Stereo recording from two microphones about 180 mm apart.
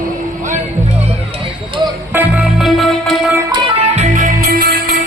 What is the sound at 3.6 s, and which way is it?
Music, 40° right (ahead or behind).